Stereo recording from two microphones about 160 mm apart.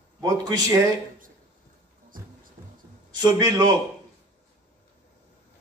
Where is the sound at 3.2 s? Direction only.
25° right (ahead or behind).